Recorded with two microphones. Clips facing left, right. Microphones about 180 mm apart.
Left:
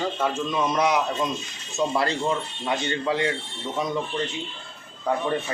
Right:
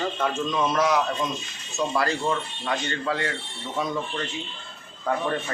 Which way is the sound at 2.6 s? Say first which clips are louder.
Left 2 dB; 20° left (ahead or behind).